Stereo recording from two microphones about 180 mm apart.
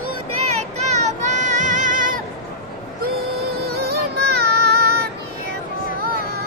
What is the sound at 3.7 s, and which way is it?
Music, 65° right (ahead or behind).